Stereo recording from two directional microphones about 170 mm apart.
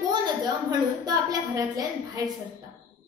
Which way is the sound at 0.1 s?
25° right (ahead or behind).